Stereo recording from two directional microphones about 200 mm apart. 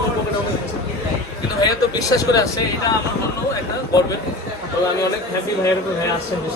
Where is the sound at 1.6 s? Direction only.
15° left (ahead or behind).